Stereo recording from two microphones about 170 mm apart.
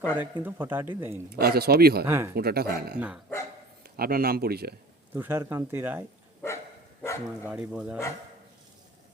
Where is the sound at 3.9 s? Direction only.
60° right (ahead or behind).